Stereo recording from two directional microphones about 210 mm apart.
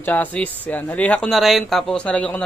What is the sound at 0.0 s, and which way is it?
Speech, 10° left (ahead or behind).